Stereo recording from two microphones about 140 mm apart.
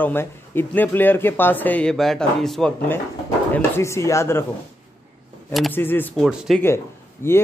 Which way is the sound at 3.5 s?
20° left (ahead or behind).